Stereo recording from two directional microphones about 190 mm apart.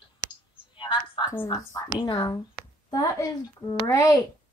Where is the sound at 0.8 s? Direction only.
25° left (ahead or behind).